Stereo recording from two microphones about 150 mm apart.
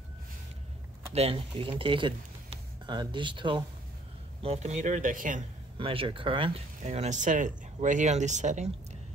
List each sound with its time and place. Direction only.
1.1 s speech: 40° right (ahead or behind)
4.4 s speech: 45° right (ahead or behind)
5.8 s speech: 35° right (ahead or behind)
6.8 s speech: 50° right (ahead or behind)